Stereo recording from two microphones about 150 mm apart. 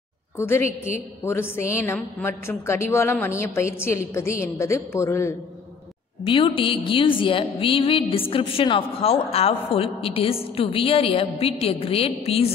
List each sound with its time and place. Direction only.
0.4 s a woman's voice: 15° left (ahead or behind)
6.2 s a woman's voice: 35° left (ahead or behind)